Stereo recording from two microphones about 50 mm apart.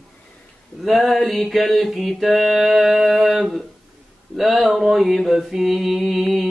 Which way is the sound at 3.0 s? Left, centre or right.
Centre.